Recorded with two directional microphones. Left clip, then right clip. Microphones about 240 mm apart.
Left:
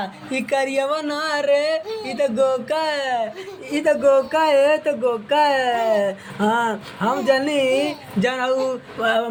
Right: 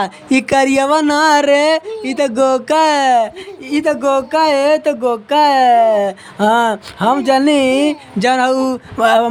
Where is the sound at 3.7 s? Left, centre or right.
Right.